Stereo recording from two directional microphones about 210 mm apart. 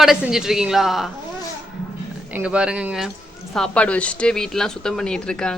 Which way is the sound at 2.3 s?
5° right (ahead or behind).